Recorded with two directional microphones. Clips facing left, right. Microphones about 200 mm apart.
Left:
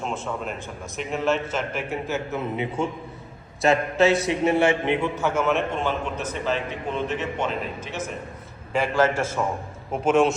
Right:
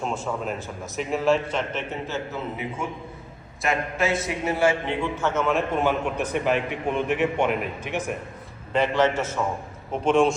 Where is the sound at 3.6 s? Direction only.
30° left (ahead or behind); by 5.6 s 5° left (ahead or behind).